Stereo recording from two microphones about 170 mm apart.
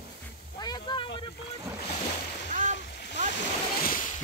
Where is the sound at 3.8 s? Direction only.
55° left (ahead or behind).